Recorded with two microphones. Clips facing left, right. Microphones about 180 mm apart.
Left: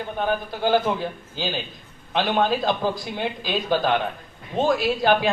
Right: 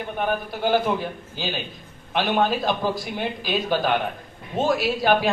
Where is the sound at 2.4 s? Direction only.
10° right (ahead or behind).